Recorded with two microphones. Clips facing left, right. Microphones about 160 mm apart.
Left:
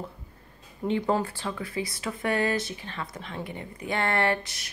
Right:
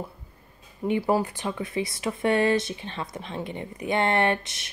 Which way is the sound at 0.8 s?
10° right (ahead or behind).